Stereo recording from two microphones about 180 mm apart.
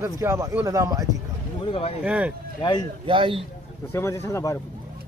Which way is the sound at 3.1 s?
30° right (ahead or behind).